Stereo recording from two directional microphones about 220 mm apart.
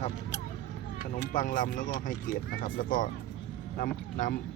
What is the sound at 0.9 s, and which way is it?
Speech, 35° left (ahead or behind).